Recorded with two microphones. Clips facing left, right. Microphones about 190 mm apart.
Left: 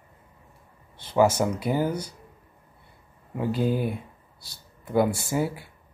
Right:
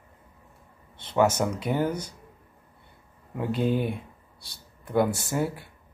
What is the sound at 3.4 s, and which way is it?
Speech, centre (ahead or behind).